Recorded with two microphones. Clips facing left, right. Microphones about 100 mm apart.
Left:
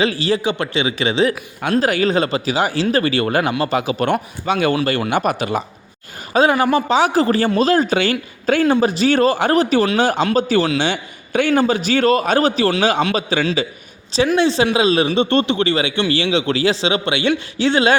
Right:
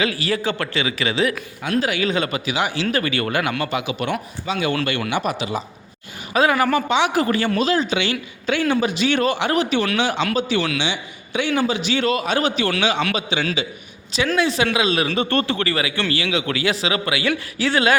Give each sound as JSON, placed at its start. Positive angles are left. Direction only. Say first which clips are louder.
{"t": 0.0, "sound": "speech", "louder": "left 4 dB", "side_deg": 30}
{"t": 1.8, "sound": "speech", "louder": "left 5 dB", "side_deg": 40}
{"t": 4.1, "sound": "speech", "louder": "left 6 dB", "side_deg": 55}
{"t": 4.9, "sound": "a man's voice", "louder": "left 4 dB", "side_deg": 40}
{"t": 6.3, "sound": "a man's voice", "louder": "left 3 dB", "side_deg": 30}
{"t": 14.3, "sound": "speech", "louder": "left 3 dB", "side_deg": 30}